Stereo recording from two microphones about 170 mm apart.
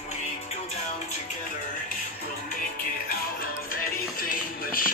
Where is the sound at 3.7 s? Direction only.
60° left (ahead or behind).